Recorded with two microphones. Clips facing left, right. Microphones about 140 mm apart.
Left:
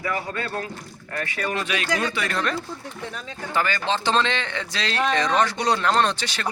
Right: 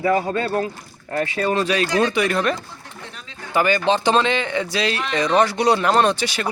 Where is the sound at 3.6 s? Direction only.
15° right (ahead or behind).